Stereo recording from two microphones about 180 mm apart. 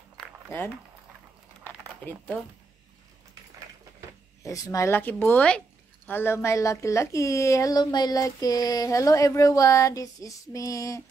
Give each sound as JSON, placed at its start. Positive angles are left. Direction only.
{"t": 4.4, "sound": "speech", "side_deg": 15}